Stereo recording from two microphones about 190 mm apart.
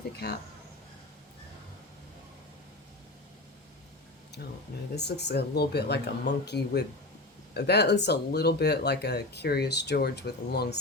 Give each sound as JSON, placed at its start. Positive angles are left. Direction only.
{"t": 0.2, "sound": "speech", "side_deg": 60}
{"t": 4.9, "sound": "speech", "side_deg": 60}